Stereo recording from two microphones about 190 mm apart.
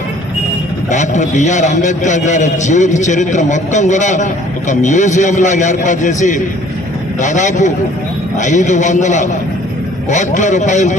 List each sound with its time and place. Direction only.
0.9 s a man's voice: 40° left (ahead or behind)